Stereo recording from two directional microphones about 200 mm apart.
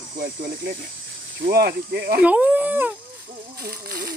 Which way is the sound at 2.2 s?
5° right (ahead or behind).